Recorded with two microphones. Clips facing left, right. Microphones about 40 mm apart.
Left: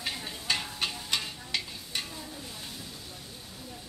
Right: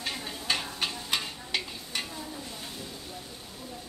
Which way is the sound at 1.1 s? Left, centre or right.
Centre.